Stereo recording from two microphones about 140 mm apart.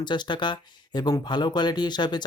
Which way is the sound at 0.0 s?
30° left (ahead or behind).